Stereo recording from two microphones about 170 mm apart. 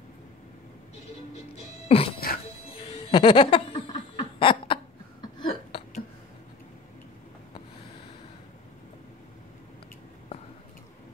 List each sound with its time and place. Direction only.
1.9 s speech: 35° left (ahead or behind)
2.1 s music: 60° left (ahead or behind)
2.9 s laughter: 30° left (ahead or behind)
5.5 s a sound: 40° left (ahead or behind)